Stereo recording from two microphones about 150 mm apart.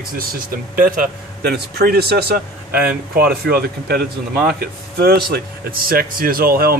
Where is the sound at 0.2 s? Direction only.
70° right (ahead or behind); by 2.4 s 90° right.